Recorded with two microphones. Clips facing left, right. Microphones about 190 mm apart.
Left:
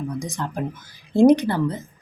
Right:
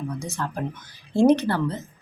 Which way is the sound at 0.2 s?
15° left (ahead or behind).